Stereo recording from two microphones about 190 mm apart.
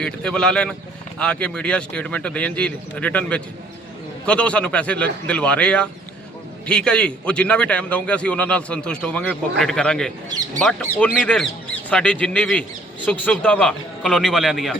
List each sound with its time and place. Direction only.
0.0 s a man's voice: 5° left (ahead or behind)
10.2 s speech: 20° right (ahead or behind)
10.6 s a man's voice: 5° left (ahead or behind)